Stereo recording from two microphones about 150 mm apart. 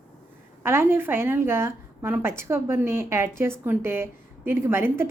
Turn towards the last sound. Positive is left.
turn(degrees=-15)  # may be behind; listen again after turning